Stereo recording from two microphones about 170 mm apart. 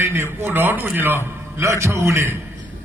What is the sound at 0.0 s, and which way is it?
A man's voice, 15° right (ahead or behind).